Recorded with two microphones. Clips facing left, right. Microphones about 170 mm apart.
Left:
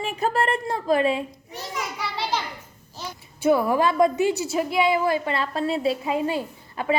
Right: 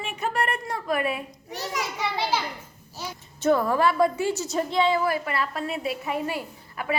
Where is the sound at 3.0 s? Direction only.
10° right (ahead or behind).